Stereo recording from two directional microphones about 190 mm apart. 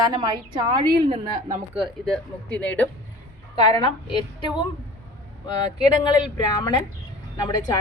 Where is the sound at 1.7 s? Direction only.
Centre (ahead or behind).